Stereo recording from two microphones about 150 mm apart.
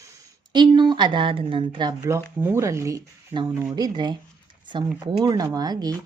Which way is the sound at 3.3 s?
35° right (ahead or behind).